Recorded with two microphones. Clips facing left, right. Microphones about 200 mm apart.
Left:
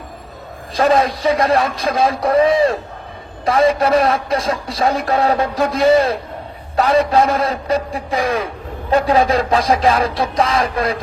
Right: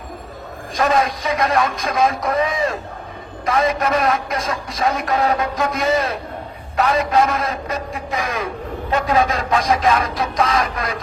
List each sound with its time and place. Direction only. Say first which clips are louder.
0.8 s a man's voice: left 4 dB; 30° left (ahead or behind)